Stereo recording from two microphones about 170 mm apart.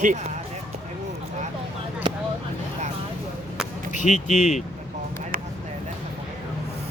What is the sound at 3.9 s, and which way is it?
Speech, 45° left (ahead or behind).